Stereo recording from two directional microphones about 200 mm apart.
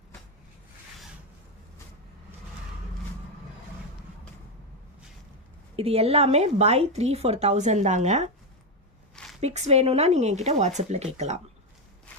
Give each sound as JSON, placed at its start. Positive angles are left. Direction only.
{"t": 5.7, "sound": "speech", "side_deg": -30}
{"t": 9.4, "sound": "speech", "side_deg": -30}